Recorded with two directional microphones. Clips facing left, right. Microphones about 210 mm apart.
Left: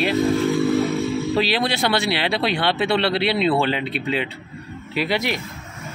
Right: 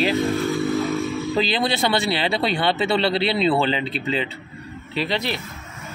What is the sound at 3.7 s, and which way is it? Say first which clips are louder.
Speech: even; 5° left (ahead or behind).